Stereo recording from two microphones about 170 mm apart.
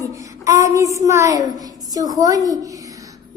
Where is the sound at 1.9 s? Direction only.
20° right (ahead or behind).